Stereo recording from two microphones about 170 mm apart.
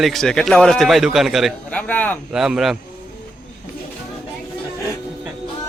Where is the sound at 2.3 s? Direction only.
5° right (ahead or behind).